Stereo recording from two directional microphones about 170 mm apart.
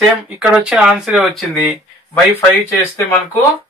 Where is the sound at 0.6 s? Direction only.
5° right (ahead or behind).